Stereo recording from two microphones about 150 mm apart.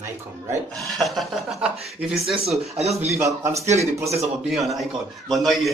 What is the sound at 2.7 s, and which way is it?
Speech, 45° right (ahead or behind).